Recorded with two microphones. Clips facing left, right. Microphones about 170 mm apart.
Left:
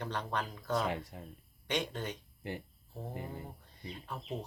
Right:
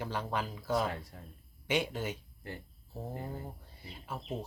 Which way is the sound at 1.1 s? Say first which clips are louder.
Left 3 dB; 20° left (ahead or behind).